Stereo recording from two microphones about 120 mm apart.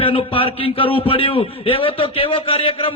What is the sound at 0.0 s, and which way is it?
A man's voice, 50° left (ahead or behind).